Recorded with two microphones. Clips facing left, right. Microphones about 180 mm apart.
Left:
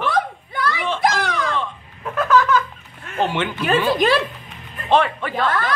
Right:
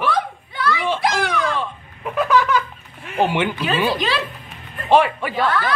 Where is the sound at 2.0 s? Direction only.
10° right (ahead or behind).